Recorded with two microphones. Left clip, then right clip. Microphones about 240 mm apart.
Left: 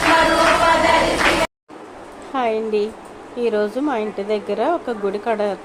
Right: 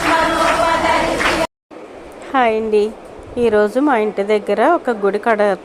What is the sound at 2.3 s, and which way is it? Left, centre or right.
A woman's voice, right.